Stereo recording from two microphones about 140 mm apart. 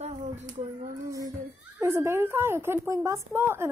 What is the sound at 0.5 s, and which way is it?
Speech, 70° right (ahead or behind).